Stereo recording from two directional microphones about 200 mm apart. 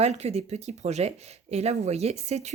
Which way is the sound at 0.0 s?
35° right (ahead or behind).